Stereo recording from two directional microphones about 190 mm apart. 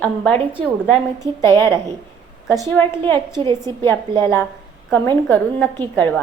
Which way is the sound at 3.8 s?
15° left (ahead or behind).